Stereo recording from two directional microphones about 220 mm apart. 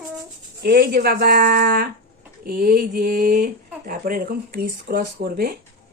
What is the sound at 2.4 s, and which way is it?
Mantra, 40° right (ahead or behind).